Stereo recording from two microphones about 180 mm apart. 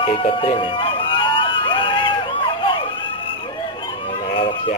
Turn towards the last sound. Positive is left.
turn(degrees=30)  # may be behind; listen again after turning